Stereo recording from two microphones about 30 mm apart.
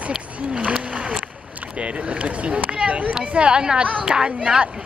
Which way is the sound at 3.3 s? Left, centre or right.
Right.